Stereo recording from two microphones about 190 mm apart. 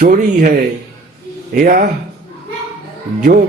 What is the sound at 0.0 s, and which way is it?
Speech, 50° right (ahead or behind).